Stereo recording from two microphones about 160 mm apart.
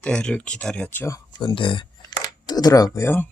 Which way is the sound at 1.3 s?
30° left (ahead or behind).